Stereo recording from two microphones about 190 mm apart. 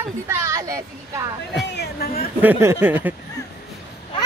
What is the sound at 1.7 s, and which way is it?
Speech, 60° left (ahead or behind).